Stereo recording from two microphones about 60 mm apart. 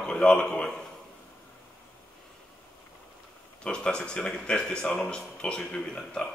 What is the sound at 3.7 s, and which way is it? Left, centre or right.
A man's voice, centre.